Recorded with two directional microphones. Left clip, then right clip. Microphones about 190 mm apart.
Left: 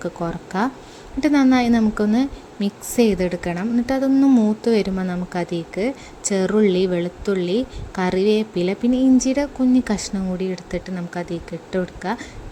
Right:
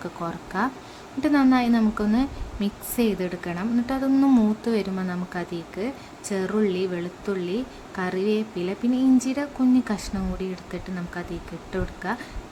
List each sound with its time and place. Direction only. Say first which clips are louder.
0.0 s a woman's voice: left 5 dB; 20° left (ahead or behind)
4.6 s a woman's voice: left 7 dB; 20° left (ahead or behind)